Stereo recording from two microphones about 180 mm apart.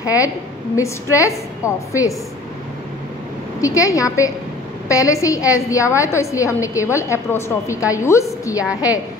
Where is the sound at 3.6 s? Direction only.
20° left (ahead or behind).